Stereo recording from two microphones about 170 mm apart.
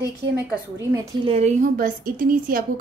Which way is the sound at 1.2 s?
40° right (ahead or behind).